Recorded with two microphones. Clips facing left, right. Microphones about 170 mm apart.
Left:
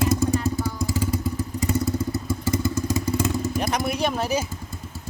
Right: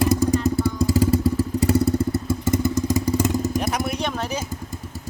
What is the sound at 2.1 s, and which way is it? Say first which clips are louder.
Motorcycle: right 3 dB; 20° right (ahead or behind).